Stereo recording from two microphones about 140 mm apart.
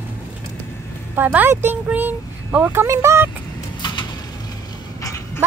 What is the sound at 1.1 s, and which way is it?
Speech, 15° right (ahead or behind).